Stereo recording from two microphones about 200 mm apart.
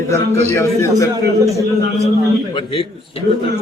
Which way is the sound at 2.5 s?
25° left (ahead or behind).